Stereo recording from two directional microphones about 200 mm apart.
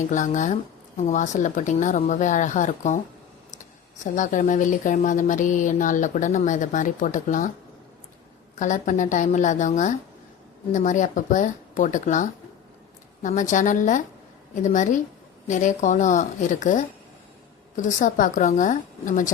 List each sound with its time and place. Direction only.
0.1 s speech: 40° left (ahead or behind)
8.5 s speech: 40° left (ahead or behind)